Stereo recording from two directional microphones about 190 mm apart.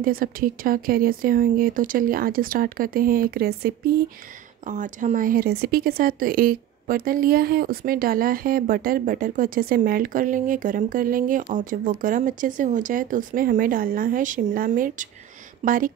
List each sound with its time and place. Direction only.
0.0 s speech: 50° right (ahead or behind)
4.6 s speech: 40° right (ahead or behind)